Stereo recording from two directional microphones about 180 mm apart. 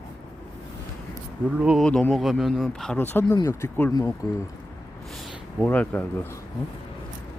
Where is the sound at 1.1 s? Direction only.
5° right (ahead or behind).